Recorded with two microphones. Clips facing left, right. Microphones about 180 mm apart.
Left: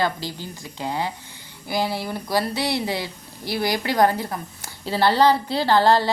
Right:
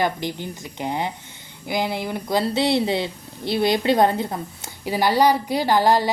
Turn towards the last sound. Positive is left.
turn(degrees=-15)  # may be behind; listen again after turning